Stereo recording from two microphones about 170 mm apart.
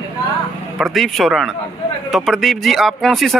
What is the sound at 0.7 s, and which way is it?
Speech, centre (ahead or behind).